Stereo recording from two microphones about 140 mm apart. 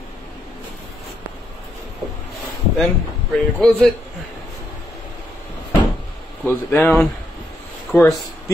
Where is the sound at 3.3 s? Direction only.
5° left (ahead or behind).